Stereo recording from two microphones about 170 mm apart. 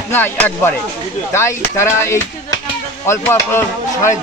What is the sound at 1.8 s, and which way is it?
Speech, 15° left (ahead or behind).